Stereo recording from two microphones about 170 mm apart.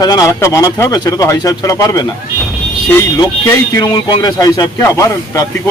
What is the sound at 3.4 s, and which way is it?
Speech, 20° left (ahead or behind).